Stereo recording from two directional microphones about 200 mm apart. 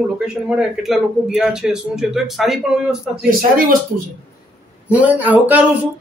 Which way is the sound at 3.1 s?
45° right (ahead or behind).